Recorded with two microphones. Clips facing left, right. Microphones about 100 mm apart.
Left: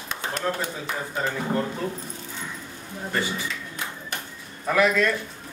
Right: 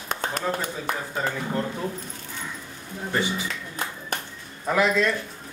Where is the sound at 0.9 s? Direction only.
50° right (ahead or behind).